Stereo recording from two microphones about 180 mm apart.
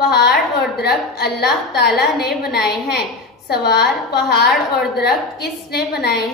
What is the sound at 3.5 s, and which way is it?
A woman's voice, 65° left (ahead or behind).